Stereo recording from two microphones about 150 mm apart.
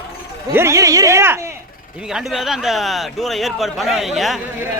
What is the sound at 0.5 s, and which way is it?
Speech, 20° right (ahead or behind).